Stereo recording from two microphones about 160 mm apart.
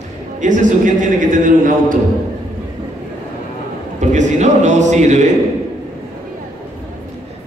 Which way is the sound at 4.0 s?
45° right (ahead or behind).